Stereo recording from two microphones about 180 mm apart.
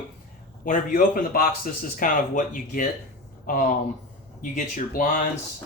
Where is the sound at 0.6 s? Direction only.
50° left (ahead or behind).